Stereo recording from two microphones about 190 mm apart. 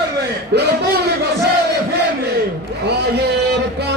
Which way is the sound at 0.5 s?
60° right (ahead or behind).